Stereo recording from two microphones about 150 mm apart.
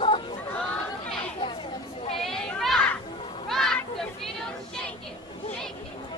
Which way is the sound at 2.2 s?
5° left (ahead or behind).